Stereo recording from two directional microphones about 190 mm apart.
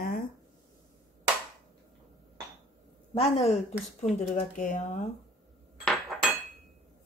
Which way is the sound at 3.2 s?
35° left (ahead or behind).